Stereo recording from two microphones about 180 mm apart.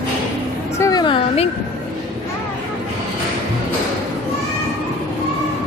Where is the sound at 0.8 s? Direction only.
25° left (ahead or behind).